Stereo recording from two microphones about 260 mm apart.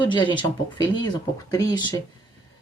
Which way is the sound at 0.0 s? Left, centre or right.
Centre.